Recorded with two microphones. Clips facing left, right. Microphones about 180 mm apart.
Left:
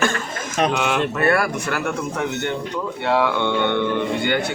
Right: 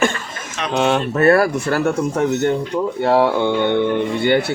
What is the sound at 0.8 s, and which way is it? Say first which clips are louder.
A man's voice: right 4 dB; 35° right (ahead or behind).